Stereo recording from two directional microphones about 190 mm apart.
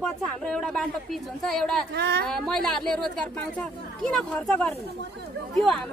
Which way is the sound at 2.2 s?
5° left (ahead or behind).